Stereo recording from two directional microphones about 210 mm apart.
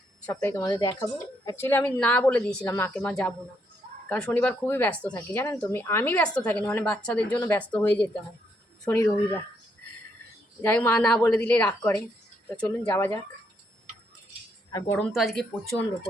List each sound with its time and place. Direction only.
0.3 s a woman's voice: 10° left (ahead or behind)
10.6 s a woman's voice: 10° left (ahead or behind)
14.7 s speech: 15° left (ahead or behind)
15.1 s speech: centre (ahead or behind)